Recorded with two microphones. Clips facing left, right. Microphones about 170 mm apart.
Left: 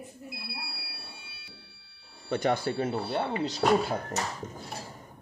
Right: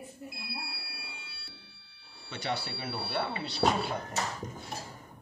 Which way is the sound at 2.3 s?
50° left (ahead or behind).